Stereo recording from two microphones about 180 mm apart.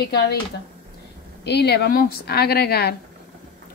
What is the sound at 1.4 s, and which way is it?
A woman's voice, 65° left (ahead or behind).